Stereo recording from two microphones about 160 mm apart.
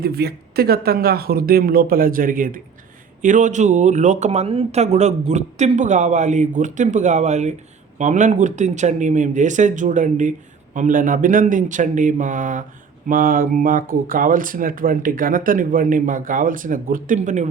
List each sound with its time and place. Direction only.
0.0 s speech: 80° right; by 17.5 s 45° right (ahead or behind)